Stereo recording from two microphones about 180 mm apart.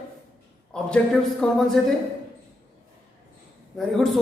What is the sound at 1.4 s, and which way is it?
Speech, 5° left (ahead or behind).